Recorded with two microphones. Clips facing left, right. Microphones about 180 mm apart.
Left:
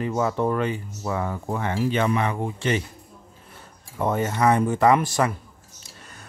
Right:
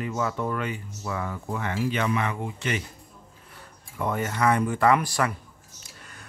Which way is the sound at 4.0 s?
25° left (ahead or behind).